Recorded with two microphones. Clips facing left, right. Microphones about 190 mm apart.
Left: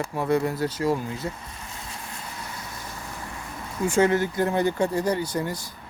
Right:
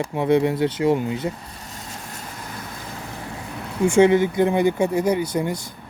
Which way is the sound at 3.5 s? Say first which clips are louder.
Right 6 dB; 70° right (ahead or behind).